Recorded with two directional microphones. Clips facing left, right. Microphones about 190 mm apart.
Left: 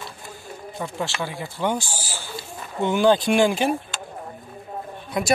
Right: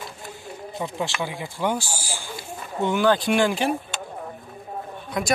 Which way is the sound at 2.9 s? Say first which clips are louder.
Left 2 dB; 25° left (ahead or behind).